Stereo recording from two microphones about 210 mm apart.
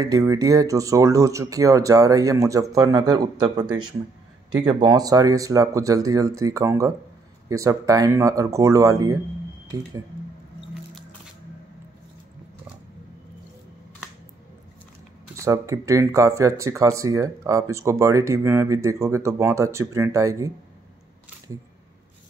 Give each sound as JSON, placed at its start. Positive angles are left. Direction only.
{"t": 0.3, "sound": "speech", "side_deg": -15}
{"t": 4.6, "sound": "speech", "side_deg": -20}
{"t": 15.3, "sound": "speech", "side_deg": -15}